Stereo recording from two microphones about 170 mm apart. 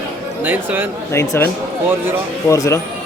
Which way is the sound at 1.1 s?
15° left (ahead or behind).